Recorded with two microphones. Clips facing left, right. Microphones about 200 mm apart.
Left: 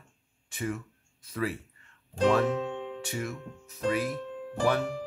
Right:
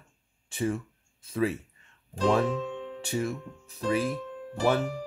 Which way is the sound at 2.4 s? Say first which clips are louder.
Left 1 dB; 65° left (ahead or behind).